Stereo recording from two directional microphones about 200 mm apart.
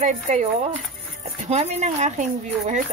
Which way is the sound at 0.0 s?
35° right (ahead or behind).